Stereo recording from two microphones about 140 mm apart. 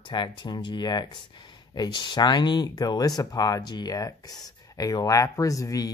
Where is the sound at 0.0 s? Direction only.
35° left (ahead or behind).